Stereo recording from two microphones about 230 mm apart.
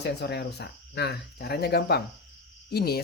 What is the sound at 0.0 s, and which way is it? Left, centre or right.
Speech, left.